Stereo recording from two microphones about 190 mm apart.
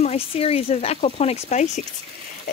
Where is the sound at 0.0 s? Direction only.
35° left (ahead or behind).